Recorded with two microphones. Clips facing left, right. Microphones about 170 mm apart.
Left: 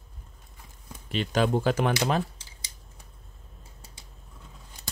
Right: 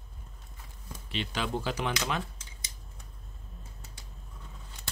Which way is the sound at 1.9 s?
30° left (ahead or behind).